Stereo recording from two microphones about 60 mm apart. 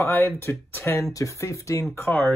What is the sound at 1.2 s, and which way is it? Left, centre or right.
Speech, left.